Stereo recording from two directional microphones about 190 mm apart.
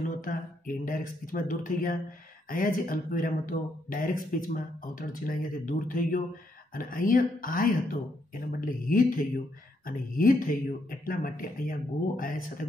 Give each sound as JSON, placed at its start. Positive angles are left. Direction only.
{"t": 0.2, "sound": "speech", "side_deg": 45}